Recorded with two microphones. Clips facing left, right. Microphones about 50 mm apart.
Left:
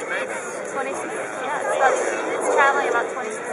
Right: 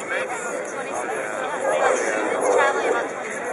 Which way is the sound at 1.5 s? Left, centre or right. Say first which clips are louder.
Left 1 dB; centre.